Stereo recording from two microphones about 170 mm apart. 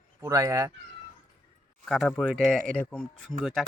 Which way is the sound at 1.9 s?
Centre (ahead or behind).